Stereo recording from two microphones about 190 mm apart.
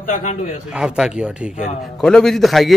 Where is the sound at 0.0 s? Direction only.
40° left (ahead or behind).